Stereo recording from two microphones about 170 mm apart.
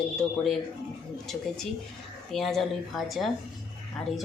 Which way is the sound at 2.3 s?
Centre (ahead or behind).